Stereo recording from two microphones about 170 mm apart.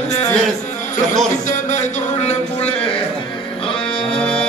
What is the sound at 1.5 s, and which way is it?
Speech, 45° left (ahead or behind).